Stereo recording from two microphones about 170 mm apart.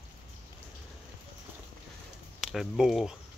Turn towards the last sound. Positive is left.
turn(degrees=-5)  # may be behind; listen again after turning